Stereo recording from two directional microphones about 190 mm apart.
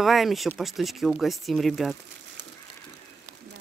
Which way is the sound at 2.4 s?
70° right (ahead or behind).